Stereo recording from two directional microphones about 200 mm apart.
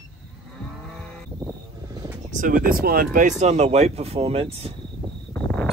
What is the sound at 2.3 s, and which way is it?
Speech, 45° right (ahead or behind).